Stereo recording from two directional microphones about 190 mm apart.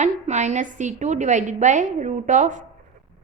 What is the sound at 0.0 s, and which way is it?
A woman's voice, 40° right (ahead or behind).